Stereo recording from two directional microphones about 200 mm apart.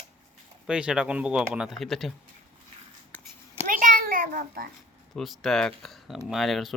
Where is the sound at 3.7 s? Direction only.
40° right (ahead or behind).